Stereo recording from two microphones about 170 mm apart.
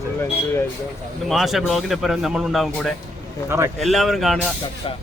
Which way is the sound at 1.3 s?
Centre (ahead or behind).